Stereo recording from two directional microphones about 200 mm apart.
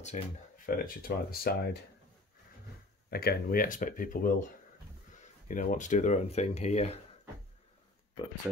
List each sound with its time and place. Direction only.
0.7 s speech: 45° left (ahead or behind)
3.1 s speech: 50° left (ahead or behind); by 7.0 s 30° left (ahead or behind)